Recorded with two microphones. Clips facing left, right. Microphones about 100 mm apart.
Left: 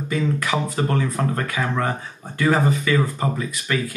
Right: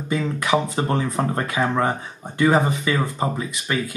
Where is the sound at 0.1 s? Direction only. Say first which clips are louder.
Right 2 dB; 25° right (ahead or behind).